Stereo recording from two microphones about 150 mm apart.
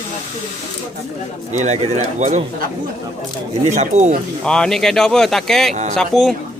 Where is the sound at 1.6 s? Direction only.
50° right (ahead or behind).